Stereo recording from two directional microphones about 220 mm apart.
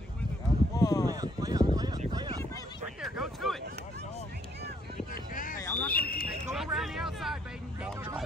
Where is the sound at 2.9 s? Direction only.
Centre (ahead or behind).